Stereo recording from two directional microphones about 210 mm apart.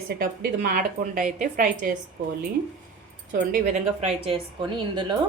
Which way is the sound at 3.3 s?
40° right (ahead or behind).